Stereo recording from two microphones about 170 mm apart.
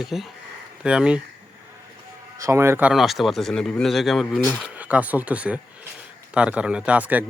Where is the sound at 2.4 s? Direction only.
15° right (ahead or behind).